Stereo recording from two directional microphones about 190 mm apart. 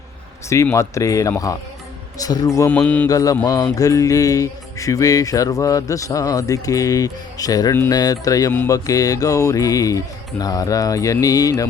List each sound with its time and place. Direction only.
0.5 s music: 15° left (ahead or behind)